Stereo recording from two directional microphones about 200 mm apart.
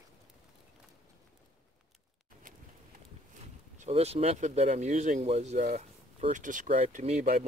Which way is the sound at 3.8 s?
30° right (ahead or behind).